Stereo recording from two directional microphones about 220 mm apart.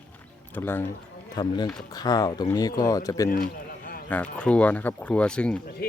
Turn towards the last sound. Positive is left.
turn(degrees=5)  # may be behind; listen again after turning